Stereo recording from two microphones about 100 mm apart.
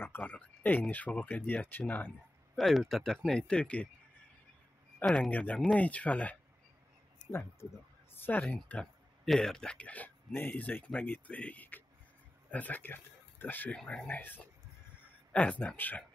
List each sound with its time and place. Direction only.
0.0 s speech: 20° left (ahead or behind)
2.5 s speech: centre (ahead or behind)
4.9 s a sound: 10° left (ahead or behind)
5.3 s speech: 15° left (ahead or behind)
8.1 s speech: 20° left (ahead or behind)
9.2 s speech: 5° left (ahead or behind)
15.6 s speech: 15° left (ahead or behind)